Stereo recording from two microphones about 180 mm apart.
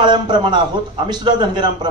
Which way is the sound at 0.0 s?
25° right (ahead or behind).